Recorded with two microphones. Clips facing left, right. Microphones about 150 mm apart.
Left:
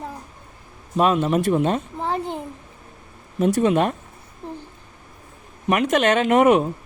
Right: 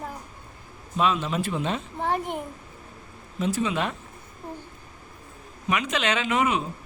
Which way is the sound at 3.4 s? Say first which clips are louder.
Left 8 dB; 50° left (ahead or behind).